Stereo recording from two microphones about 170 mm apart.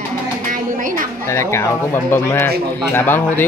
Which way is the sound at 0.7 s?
50° right (ahead or behind).